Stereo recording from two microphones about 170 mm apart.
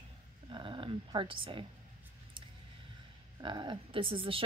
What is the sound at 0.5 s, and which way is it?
Speech, 30° right (ahead or behind).